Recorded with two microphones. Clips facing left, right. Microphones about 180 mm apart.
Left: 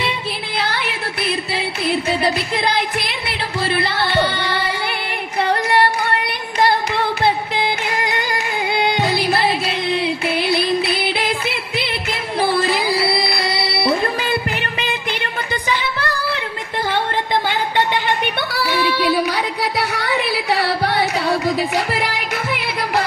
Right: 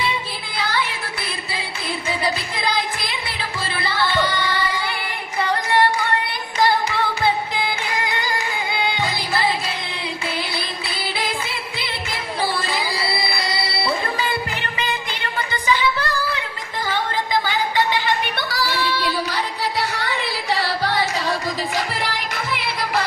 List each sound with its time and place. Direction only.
0.6 s music: 65° left (ahead or behind)
8.4 s music: 60° left (ahead or behind)
16.0 s a sound: 65° left (ahead or behind)
18.5 s child singing: 65° left (ahead or behind)